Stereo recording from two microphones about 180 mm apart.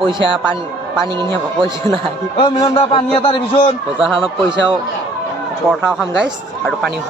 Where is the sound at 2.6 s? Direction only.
30° left (ahead or behind).